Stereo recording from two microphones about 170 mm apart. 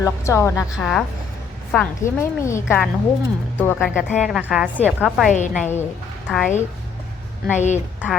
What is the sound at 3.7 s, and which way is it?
Speech, 5° right (ahead or behind).